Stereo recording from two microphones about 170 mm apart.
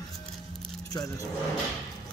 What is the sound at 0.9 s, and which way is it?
Speech, 20° left (ahead or behind).